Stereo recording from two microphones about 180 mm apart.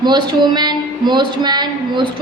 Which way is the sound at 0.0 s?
25° right (ahead or behind).